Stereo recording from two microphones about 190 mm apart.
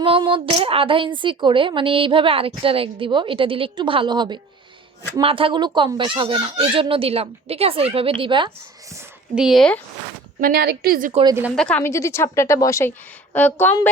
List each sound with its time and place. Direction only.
0.0 s a woman's voice: 25° right (ahead or behind)
9.3 s speech: centre (ahead or behind)
10.4 s a woman's voice: 50° right (ahead or behind)
11.1 s a woman's voice: 25° right (ahead or behind)
11.5 s a woman's voice: 5° left (ahead or behind)